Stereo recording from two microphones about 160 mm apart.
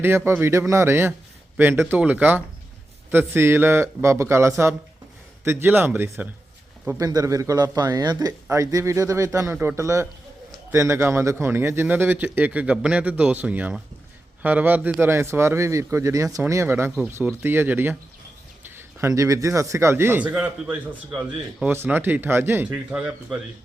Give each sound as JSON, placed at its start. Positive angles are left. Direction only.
{"t": 0.0, "sound": "a man's voice", "side_deg": -15}